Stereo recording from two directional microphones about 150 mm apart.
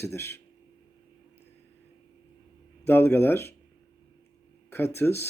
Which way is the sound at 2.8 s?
15° left (ahead or behind).